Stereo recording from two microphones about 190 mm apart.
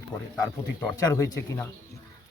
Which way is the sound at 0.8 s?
15° left (ahead or behind).